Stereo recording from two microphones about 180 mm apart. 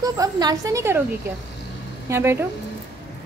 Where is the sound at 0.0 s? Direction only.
20° right (ahead or behind).